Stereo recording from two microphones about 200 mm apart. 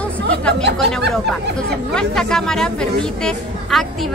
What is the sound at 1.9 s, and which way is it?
Speech, 5° left (ahead or behind).